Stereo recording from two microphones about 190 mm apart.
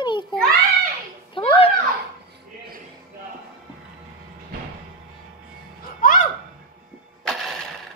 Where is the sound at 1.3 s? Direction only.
30° left (ahead or behind).